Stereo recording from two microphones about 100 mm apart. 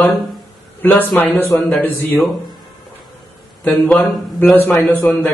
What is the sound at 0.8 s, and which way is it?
A man's voice, 15° left (ahead or behind).